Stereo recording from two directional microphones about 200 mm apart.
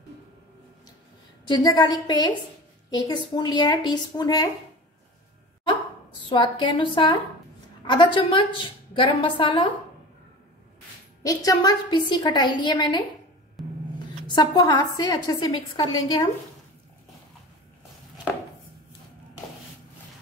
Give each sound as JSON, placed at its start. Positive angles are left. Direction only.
{"t": 1.5, "sound": "a woman's voice", "side_deg": 20}
{"t": 6.2, "sound": "a woman's voice", "side_deg": 25}
{"t": 11.2, "sound": "a woman's voice", "side_deg": 20}
{"t": 13.6, "sound": "rub", "side_deg": 0}
{"t": 14.2, "sound": "a woman's voice", "side_deg": 20}